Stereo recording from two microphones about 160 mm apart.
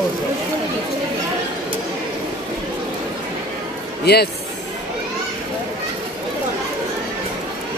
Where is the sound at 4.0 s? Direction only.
90° left.